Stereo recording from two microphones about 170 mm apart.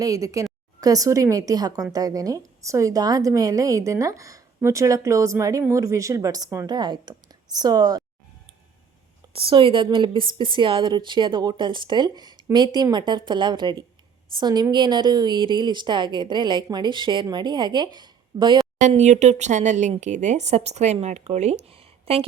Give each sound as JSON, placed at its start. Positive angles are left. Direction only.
{"t": 0.0, "sound": "a woman's voice", "side_deg": -20}
{"t": 9.3, "sound": "a woman's voice", "side_deg": -30}
{"t": 18.8, "sound": "speech", "side_deg": -45}